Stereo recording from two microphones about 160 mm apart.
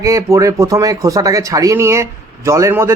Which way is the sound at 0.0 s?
20° right (ahead or behind).